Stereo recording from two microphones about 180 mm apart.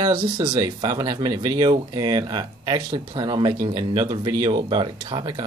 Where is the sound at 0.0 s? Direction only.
25° right (ahead or behind).